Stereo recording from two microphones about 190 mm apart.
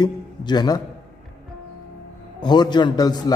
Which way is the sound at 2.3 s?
20° left (ahead or behind).